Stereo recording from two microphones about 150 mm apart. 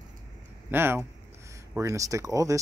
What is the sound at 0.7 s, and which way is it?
Speech, 15° right (ahead or behind).